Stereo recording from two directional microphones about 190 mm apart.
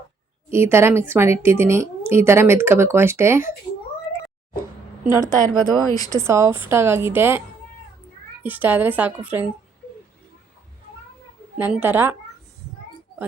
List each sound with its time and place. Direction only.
0.5 s a woman's voice: 15° right (ahead or behind)
5.0 s a woman's voice: 15° right (ahead or behind)
5.6 s speech: 20° left (ahead or behind)
6.1 s a woman's voice: 15° right (ahead or behind)
8.4 s a woman's voice: 10° right (ahead or behind)
11.5 s a woman's voice: 10° right (ahead or behind)